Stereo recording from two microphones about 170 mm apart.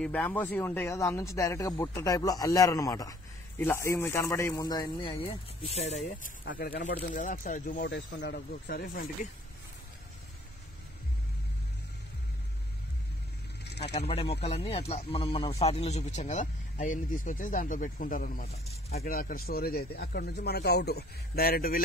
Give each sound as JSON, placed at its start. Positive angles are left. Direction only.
{"t": 0.0, "sound": "speech", "side_deg": 10}
{"t": 6.4, "sound": "speech", "side_deg": 60}
{"t": 13.9, "sound": "speech", "side_deg": 35}
{"t": 18.5, "sound": "speech", "side_deg": 40}
{"t": 19.0, "sound": "speech", "side_deg": 60}